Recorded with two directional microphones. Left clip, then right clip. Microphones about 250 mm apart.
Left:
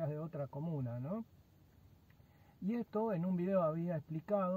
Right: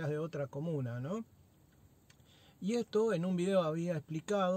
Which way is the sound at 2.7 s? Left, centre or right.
Centre.